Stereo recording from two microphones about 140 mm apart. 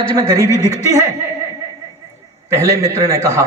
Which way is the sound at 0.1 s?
25° right (ahead or behind).